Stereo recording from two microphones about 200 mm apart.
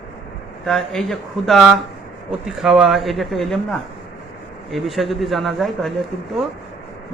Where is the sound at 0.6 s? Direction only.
Centre (ahead or behind).